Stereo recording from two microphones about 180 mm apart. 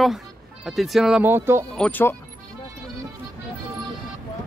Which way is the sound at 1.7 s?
10° left (ahead or behind).